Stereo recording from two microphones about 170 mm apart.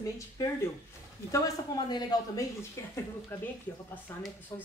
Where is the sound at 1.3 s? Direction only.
25° left (ahead or behind).